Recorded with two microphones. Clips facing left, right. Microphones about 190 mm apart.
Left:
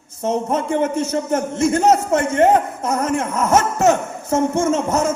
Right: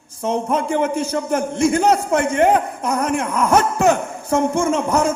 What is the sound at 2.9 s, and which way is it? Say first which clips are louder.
A man's voice: even; 10° right (ahead or behind).